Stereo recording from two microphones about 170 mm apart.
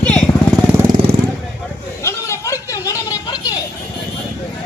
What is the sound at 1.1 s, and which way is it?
Vehicle, 65° right (ahead or behind).